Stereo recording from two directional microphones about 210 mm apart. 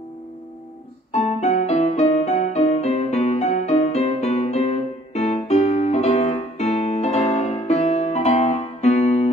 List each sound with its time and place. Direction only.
1.1 s music: 30° left (ahead or behind)